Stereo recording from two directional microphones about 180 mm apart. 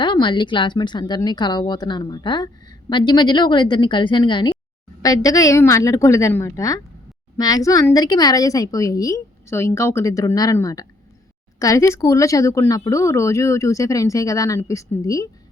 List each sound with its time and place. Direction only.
0.0 s a woman's voice: 25° left (ahead or behind)